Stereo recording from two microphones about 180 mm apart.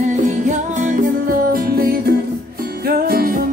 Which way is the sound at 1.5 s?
55° right (ahead or behind).